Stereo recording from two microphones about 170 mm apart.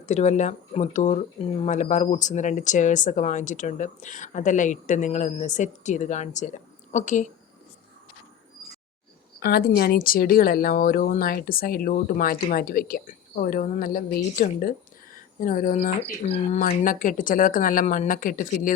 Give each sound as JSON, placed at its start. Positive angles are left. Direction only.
{"t": 0.0, "sound": "speech", "side_deg": 45}
{"t": 9.4, "sound": "speech", "side_deg": 65}
{"t": 16.6, "sound": "speech", "side_deg": 55}